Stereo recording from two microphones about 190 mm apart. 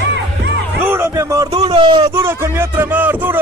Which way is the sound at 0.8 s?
10° right (ahead or behind).